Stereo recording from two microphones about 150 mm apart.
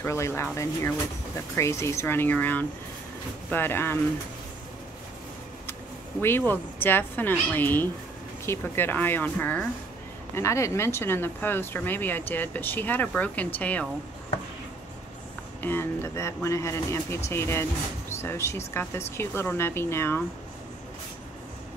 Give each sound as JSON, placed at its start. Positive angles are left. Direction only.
{"t": 0.0, "sound": "speech", "side_deg": 20}
{"t": 6.2, "sound": "speech", "side_deg": 15}
{"t": 15.6, "sound": "speech", "side_deg": 15}